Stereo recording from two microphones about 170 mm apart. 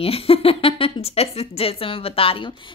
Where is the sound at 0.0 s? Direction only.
35° left (ahead or behind).